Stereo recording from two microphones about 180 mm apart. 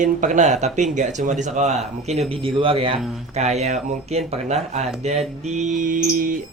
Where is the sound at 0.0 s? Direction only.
45° right (ahead or behind).